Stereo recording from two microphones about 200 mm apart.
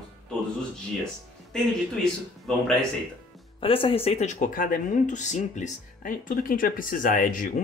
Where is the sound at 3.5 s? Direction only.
25° left (ahead or behind).